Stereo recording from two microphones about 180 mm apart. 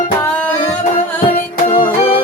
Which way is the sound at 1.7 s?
25° left (ahead or behind).